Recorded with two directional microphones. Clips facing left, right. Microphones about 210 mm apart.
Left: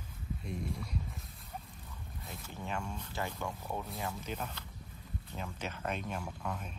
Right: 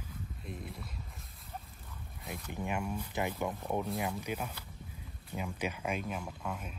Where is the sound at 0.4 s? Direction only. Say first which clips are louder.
Left 5 dB; centre (ahead or behind).